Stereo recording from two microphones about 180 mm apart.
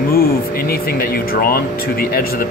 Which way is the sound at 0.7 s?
55° left (ahead or behind).